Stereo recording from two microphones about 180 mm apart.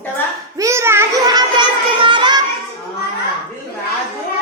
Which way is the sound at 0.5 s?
15° right (ahead or behind).